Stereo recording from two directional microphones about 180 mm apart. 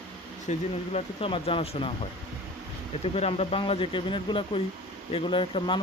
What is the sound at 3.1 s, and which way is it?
Speech, 35° left (ahead or behind).